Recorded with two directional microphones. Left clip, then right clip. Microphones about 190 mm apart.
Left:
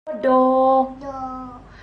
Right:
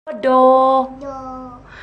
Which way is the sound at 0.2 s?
60° right (ahead or behind).